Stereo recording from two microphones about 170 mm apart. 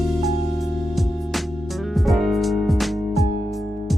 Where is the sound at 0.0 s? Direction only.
Centre (ahead or behind).